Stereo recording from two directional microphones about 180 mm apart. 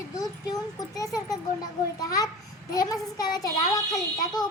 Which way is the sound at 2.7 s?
20° left (ahead or behind).